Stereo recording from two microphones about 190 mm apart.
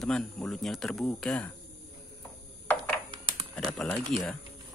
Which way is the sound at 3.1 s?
25° right (ahead or behind).